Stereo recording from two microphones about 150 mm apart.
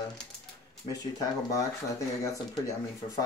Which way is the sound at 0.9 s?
25° left (ahead or behind).